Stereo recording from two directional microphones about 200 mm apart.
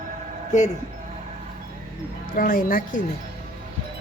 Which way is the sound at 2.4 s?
45° left (ahead or behind).